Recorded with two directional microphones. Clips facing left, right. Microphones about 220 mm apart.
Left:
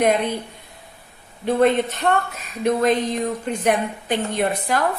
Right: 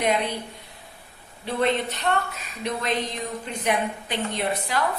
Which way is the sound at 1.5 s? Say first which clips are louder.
Left 7 dB; 45° left (ahead or behind).